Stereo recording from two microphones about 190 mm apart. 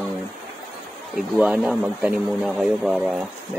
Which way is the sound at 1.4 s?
5° right (ahead or behind).